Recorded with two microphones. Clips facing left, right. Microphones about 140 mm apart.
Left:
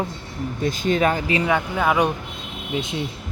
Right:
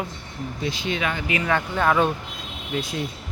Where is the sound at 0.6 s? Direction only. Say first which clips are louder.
Left 7 dB; 45° left (ahead or behind).